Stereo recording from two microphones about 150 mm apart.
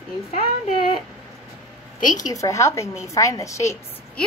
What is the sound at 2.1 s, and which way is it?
A woman's voice, 20° left (ahead or behind).